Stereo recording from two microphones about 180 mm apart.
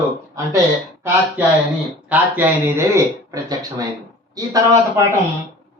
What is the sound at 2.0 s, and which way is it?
Speech, 10° right (ahead or behind).